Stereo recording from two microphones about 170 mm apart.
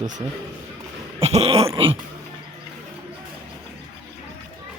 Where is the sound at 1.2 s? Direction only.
35° right (ahead or behind).